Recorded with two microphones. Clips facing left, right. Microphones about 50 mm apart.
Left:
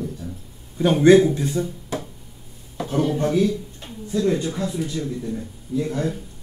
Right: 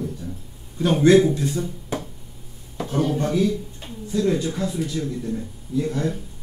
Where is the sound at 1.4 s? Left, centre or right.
Centre.